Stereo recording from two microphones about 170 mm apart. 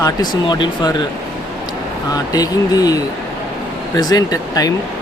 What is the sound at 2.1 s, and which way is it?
Speech, 20° left (ahead or behind).